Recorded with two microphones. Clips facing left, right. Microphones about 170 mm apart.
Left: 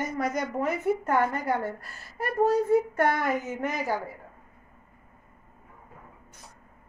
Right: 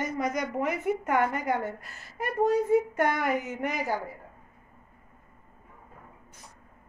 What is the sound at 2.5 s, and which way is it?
Child singing, 35° left (ahead or behind).